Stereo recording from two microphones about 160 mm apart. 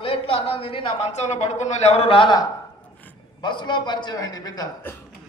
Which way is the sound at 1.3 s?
45° left (ahead or behind).